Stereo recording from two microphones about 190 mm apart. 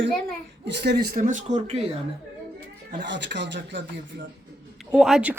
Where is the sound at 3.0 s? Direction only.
65° right (ahead or behind).